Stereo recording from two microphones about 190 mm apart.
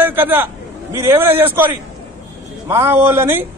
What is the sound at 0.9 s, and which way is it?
A man's voice, 10° right (ahead or behind).